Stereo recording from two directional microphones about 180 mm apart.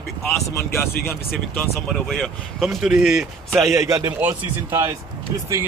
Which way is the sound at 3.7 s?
15° right (ahead or behind).